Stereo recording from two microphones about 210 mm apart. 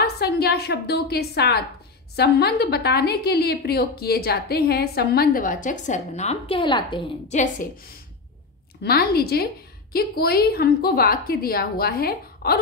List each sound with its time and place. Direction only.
0.0 s a woman's voice: 50° left (ahead or behind); by 7.3 s 25° left (ahead or behind)
8.8 s a woman's voice: 45° left (ahead or behind)